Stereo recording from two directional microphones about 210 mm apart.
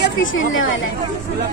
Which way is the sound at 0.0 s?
65° left (ahead or behind).